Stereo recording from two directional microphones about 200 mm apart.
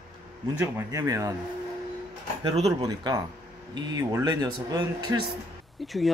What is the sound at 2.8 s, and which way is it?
Speech, 20° right (ahead or behind).